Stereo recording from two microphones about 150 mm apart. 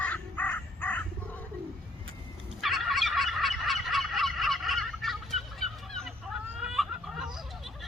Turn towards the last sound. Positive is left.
turn(degrees=-5)  # may be behind; listen again after turning